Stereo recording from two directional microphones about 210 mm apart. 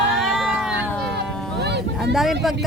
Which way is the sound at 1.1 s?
50° right (ahead or behind).